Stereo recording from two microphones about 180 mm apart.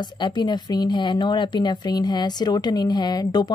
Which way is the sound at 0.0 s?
25° left (ahead or behind).